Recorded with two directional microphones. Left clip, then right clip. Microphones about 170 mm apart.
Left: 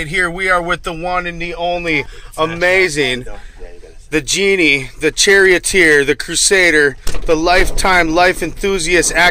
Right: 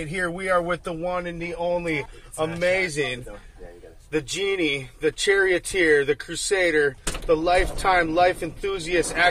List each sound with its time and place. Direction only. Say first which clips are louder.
0.1 s speech: left 9 dB; 10° left (ahead or behind); by 1.9 s 25° left (ahead or behind)
1.9 s speech: left 10 dB; 45° left (ahead or behind)